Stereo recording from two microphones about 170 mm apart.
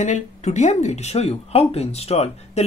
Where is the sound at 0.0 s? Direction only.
45° left (ahead or behind).